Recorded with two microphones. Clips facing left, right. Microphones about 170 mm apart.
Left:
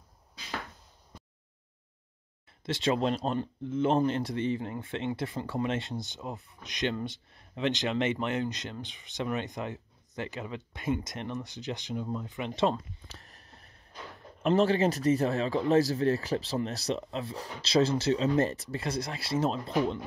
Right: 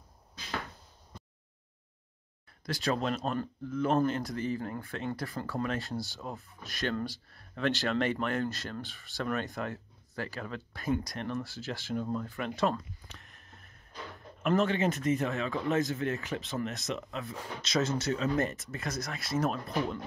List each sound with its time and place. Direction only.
2.6 s speech: 25° left (ahead or behind)
13.1 s a sound: 40° left (ahead or behind)
14.4 s speech: 30° left (ahead or behind)